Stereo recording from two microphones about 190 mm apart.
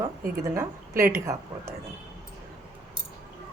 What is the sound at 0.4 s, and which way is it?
A woman's voice, 15° right (ahead or behind).